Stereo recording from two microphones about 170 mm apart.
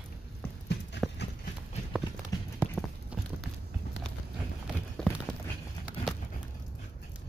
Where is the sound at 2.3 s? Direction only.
20° left (ahead or behind).